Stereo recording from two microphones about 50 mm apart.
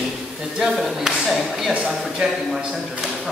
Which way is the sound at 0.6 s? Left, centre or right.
Centre.